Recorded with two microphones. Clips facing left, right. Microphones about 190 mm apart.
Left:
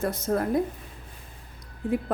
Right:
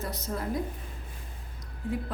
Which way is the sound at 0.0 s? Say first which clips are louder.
Left 8 dB; 50° left (ahead or behind).